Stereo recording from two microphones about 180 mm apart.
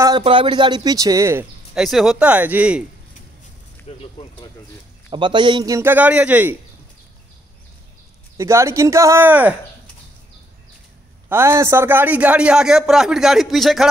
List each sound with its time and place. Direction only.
0.2 s speech: 30° right (ahead or behind)
1.8 s a man's voice: centre (ahead or behind)
4.0 s speech: 30° left (ahead or behind)
5.1 s a man's voice: 25° right (ahead or behind); by 6.5 s 10° right (ahead or behind)
8.4 s a man's voice: 15° right (ahead or behind)
11.2 s a man's voice: 15° right (ahead or behind)